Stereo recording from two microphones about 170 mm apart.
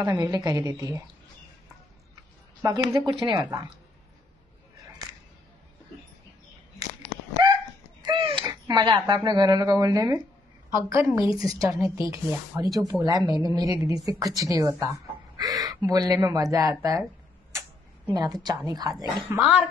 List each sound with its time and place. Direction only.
0.0 s speech: 20° right (ahead or behind)
2.6 s speech: 20° right (ahead or behind)
7.4 s dog: 25° right (ahead or behind)
8.0 s speech: 30° right (ahead or behind)